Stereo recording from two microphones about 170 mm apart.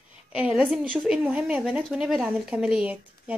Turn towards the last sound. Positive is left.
turn(degrees=-5)  # may be behind; listen again after turning